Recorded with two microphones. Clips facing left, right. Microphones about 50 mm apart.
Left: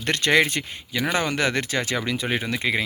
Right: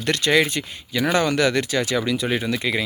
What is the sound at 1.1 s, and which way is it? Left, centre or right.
Speech, left.